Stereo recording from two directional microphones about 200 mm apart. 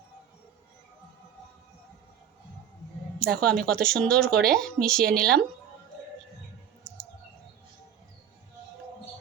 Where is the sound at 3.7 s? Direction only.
5° left (ahead or behind).